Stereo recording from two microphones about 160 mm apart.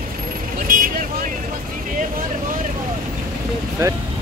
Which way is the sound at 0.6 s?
60° right (ahead or behind).